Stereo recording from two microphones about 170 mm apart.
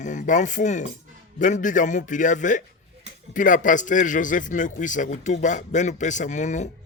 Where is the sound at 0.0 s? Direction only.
50° left (ahead or behind).